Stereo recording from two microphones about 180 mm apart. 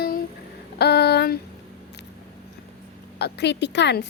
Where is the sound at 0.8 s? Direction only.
65° left (ahead or behind).